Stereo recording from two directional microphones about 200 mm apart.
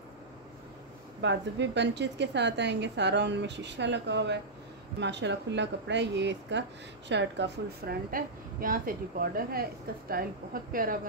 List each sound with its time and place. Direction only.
1.2 s a woman's voice: 60° right (ahead or behind); by 11.0 s 45° right (ahead or behind)